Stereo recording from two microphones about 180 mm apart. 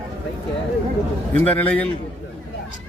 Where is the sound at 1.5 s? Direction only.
10° left (ahead or behind).